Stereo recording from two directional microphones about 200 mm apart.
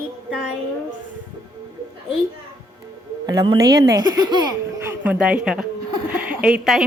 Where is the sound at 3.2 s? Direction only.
20° right (ahead or behind).